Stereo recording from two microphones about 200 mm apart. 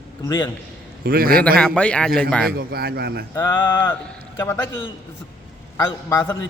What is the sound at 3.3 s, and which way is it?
Speech, 15° left (ahead or behind).